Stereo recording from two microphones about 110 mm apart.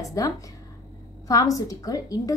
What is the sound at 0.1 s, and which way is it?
A woman's voice, 30° left (ahead or behind).